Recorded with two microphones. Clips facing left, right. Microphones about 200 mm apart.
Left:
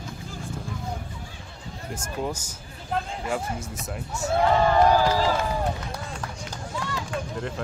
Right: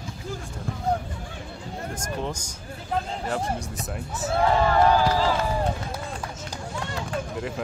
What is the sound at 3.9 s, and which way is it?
Speech, centre (ahead or behind).